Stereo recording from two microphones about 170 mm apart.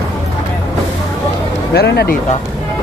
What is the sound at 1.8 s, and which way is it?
Speech, 70° left (ahead or behind).